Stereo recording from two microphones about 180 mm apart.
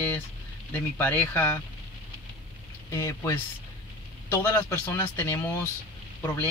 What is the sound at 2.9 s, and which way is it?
A man's voice, 15° left (ahead or behind).